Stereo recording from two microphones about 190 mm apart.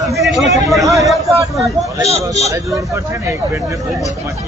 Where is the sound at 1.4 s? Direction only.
15° right (ahead or behind).